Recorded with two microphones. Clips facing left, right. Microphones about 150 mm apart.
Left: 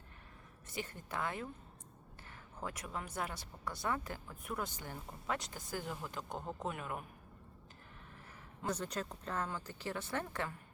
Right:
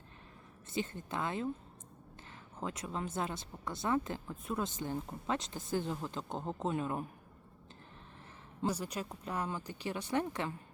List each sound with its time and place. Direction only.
0.7 s speech: 20° right (ahead or behind)
2.6 s speech: 20° right (ahead or behind)
8.7 s a woman's voice: 10° right (ahead or behind)